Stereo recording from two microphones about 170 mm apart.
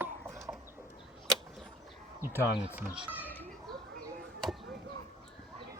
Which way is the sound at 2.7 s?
10° right (ahead or behind).